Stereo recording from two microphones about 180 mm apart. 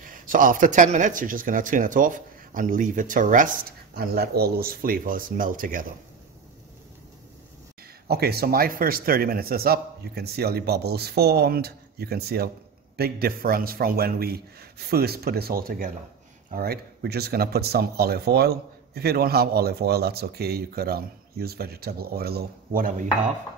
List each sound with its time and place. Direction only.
0.0 s speech: 50° right (ahead or behind)
8.1 s speech: 60° right (ahead or behind)